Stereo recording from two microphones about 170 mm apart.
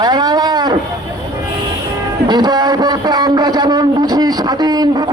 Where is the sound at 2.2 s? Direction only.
25° right (ahead or behind).